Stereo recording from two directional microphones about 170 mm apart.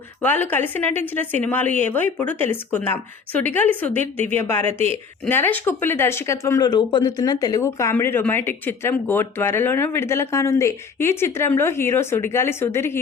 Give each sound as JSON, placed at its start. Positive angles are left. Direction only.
{"t": 0.2, "sound": "speech", "side_deg": 10}